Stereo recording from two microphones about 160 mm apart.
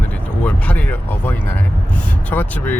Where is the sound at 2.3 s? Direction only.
10° left (ahead or behind).